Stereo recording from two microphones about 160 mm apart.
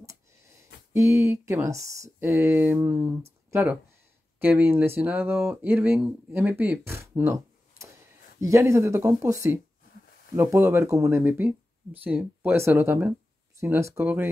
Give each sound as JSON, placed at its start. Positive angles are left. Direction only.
{"t": 0.9, "sound": "speech", "side_deg": -20}
{"t": 3.4, "sound": "a sound", "side_deg": -20}
{"t": 4.4, "sound": "speech", "side_deg": -15}